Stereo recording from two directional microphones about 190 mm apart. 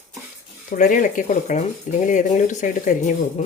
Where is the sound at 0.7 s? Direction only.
45° left (ahead or behind).